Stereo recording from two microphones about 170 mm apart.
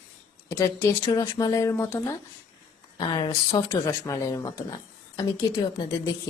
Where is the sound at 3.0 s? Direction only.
25° left (ahead or behind).